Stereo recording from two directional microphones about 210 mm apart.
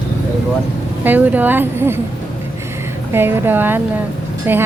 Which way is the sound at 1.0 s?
10° right (ahead or behind).